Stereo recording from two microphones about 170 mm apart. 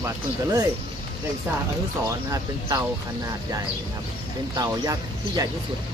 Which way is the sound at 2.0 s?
20° right (ahead or behind).